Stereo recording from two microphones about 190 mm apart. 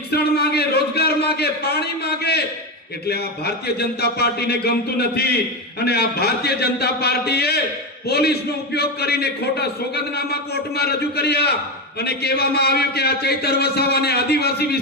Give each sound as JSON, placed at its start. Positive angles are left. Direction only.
{"t": 0.1, "sound": "a man's voice", "side_deg": 55}